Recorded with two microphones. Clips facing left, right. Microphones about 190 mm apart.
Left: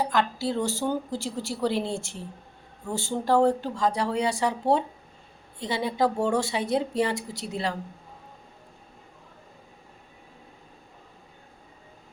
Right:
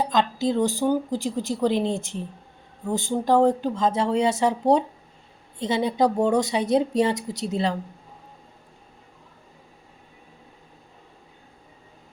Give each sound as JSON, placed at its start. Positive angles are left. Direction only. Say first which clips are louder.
{"t": 0.0, "sound": "speech", "louder": "right 3 dB", "side_deg": -20}